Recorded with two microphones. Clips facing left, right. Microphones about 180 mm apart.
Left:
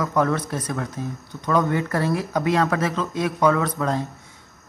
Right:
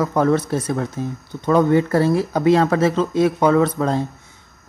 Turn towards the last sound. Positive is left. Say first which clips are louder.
# right 6 dB
turn(degrees=-30)  # may be behind; listen again after turning